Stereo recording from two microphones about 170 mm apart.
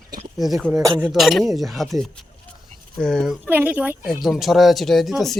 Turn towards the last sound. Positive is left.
turn(degrees=0)  # may be behind; listen again after turning